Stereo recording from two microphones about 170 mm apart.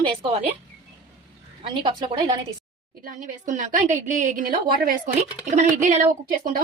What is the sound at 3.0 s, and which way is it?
A woman's voice, 50° right (ahead or behind).